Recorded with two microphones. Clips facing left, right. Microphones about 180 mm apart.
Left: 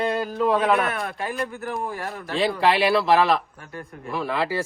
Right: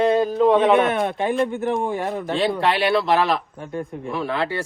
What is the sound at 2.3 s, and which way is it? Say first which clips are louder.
Speech: left 1 dB; centre (ahead or behind).